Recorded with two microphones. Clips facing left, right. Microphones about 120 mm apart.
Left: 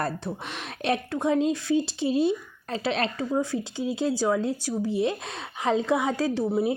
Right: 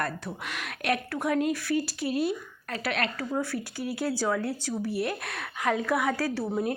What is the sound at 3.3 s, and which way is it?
Speech, 15° left (ahead or behind).